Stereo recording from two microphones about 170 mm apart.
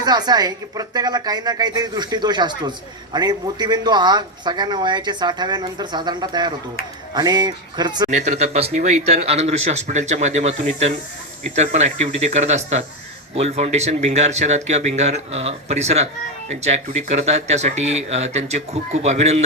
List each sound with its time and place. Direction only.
0.0 s a woman's voice: 25° right (ahead or behind)
8.1 s speech: 40° right (ahead or behind)